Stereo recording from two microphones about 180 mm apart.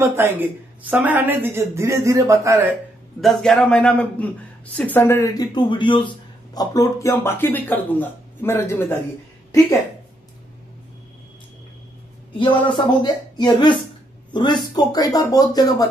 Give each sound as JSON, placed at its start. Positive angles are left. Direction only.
{"t": 0.0, "sound": "speech", "side_deg": -15}
{"t": 3.2, "sound": "a man's voice", "side_deg": 0}
{"t": 12.4, "sound": "speech", "side_deg": 25}